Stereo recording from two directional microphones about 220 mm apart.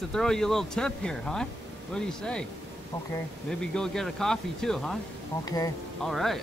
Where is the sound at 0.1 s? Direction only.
Centre (ahead or behind).